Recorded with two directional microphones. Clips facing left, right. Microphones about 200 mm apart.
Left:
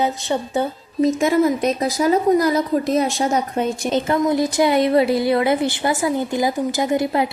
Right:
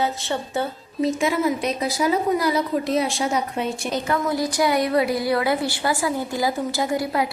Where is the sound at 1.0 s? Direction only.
45° left (ahead or behind).